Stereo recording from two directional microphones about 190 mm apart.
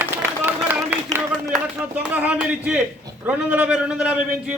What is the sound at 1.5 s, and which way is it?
A man's voice, 10° right (ahead or behind).